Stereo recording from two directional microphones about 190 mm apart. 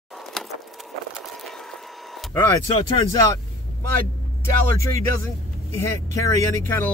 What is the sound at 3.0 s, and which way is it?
Speech, 15° left (ahead or behind).